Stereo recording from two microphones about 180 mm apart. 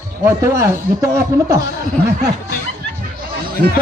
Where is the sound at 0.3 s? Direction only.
15° right (ahead or behind).